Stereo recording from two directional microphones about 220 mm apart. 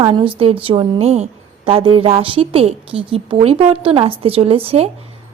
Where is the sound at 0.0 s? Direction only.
25° right (ahead or behind).